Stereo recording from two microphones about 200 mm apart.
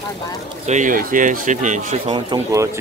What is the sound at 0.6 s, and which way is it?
Speech, 40° right (ahead or behind).